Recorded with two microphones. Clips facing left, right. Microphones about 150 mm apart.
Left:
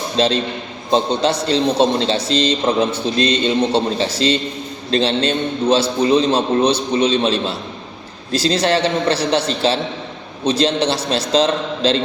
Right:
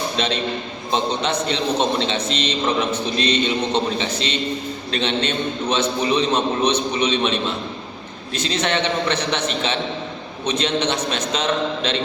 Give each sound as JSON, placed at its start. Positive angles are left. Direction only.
{"t": 0.2, "sound": "a man's voice", "side_deg": 35}